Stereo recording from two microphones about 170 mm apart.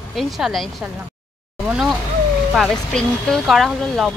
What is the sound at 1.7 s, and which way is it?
Speech, 5° right (ahead or behind).